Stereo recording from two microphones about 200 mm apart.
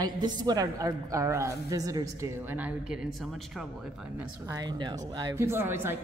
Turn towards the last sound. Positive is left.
turn(degrees=-10)  # may be behind; listen again after turning